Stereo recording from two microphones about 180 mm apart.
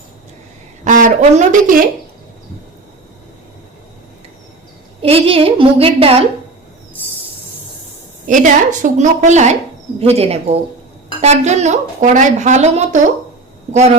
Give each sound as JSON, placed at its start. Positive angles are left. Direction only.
{"t": 0.9, "sound": "speech", "side_deg": -45}
{"t": 5.0, "sound": "speech", "side_deg": -30}
{"t": 8.3, "sound": "speech", "side_deg": -45}